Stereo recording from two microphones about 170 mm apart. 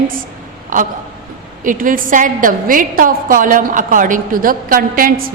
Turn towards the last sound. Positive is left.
turn(degrees=-55)  # may be behind; listen again after turning